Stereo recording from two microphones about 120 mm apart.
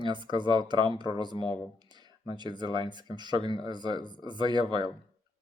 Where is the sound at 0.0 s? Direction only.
40° right (ahead or behind).